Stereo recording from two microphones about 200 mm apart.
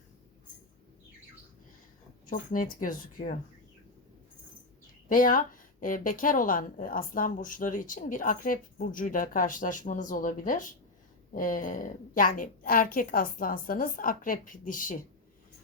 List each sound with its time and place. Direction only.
2.2 s a woman's voice: 40° left (ahead or behind)
5.0 s a woman's voice: 45° left (ahead or behind)